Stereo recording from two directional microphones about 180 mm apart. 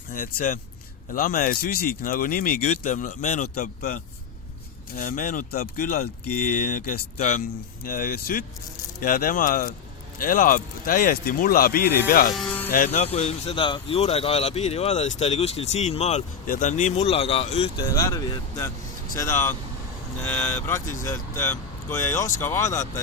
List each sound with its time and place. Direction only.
0.1 s speech: 50° left (ahead or behind)
2.6 s speech: 40° left (ahead or behind)
7.9 s speech: 50° left (ahead or behind)
12.3 s speech: centre (ahead or behind)
12.7 s speech: 45° left (ahead or behind)
17.8 s speech: 20° left (ahead or behind)